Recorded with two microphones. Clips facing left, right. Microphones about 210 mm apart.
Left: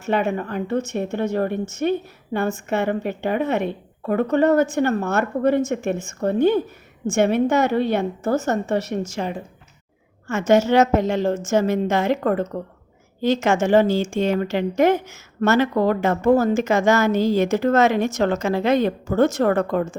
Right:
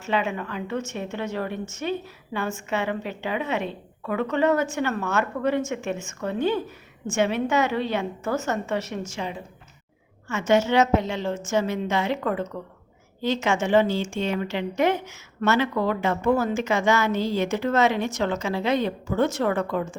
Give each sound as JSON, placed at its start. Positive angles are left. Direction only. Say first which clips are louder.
{"t": 0.0, "sound": "speech", "louder": "left 5 dB", "side_deg": 50}
{"t": 4.6, "sound": "a woman's voice", "louder": "left 6 dB", "side_deg": 35}
{"t": 8.2, "sound": "a woman's voice", "louder": "left 5 dB", "side_deg": 35}